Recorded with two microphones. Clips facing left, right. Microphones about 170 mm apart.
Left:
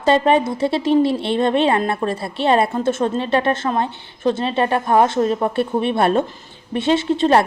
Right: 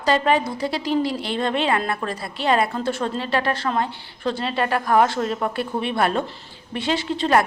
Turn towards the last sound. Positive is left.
turn(degrees=25)  # may be behind; listen again after turning